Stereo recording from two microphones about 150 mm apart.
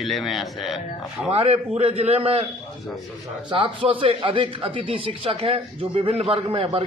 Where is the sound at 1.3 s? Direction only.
45° right (ahead or behind).